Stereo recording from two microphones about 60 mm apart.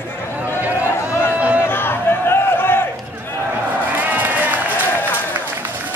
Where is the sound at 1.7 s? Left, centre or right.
Left.